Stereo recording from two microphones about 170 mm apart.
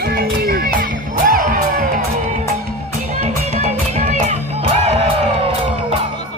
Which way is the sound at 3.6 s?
45° right (ahead or behind).